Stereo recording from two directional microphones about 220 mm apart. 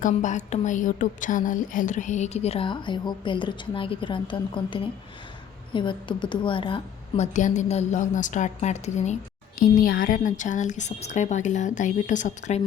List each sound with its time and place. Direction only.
0.0 s a woman's voice: 35° left (ahead or behind)